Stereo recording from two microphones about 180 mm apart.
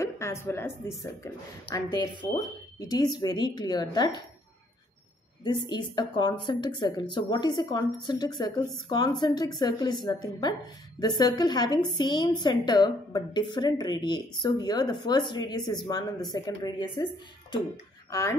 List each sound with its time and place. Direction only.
0.0 s a woman's voice: 15° left (ahead or behind)
5.4 s a woman's voice: 25° left (ahead or behind)